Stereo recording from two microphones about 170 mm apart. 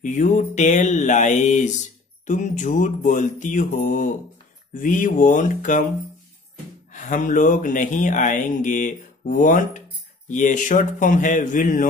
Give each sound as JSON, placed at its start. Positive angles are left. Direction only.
{"t": 0.0, "sound": "speech", "side_deg": 45}
{"t": 6.9, "sound": "speech", "side_deg": 50}